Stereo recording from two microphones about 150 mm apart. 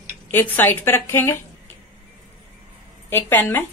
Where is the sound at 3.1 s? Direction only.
15° left (ahead or behind).